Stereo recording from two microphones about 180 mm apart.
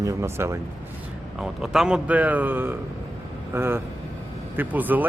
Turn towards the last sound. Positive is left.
turn(degrees=-10)  # may be behind; listen again after turning